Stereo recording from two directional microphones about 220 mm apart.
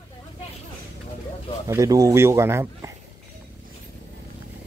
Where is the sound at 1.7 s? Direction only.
15° right (ahead or behind).